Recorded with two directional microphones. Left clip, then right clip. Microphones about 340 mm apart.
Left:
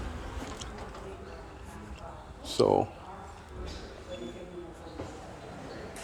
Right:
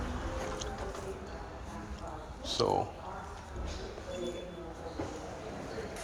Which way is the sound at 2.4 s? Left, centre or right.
Left.